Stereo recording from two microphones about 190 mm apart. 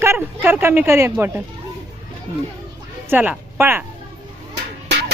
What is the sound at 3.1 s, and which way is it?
Speech, 10° right (ahead or behind).